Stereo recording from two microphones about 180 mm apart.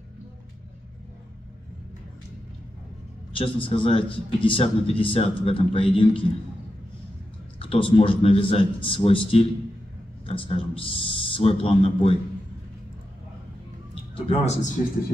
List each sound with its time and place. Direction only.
3.3 s a man's voice: 30° left (ahead or behind)
7.5 s a man's voice: 30° left (ahead or behind)
14.1 s a man's voice: 35° left (ahead or behind)